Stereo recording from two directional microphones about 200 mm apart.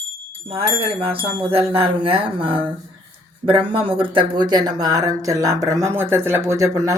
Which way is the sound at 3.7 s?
25° right (ahead or behind).